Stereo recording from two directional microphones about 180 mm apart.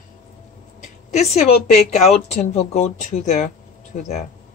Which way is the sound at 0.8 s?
40° left (ahead or behind).